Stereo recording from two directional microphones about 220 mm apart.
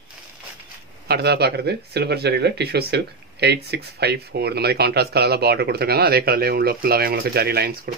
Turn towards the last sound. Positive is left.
turn(degrees=-45)  # may be behind; listen again after turning